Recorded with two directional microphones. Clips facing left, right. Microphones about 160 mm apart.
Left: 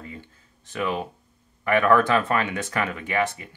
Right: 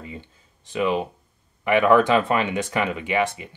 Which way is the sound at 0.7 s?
20° right (ahead or behind).